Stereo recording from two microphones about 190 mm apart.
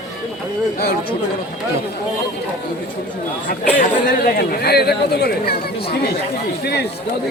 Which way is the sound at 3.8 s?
50° left (ahead or behind).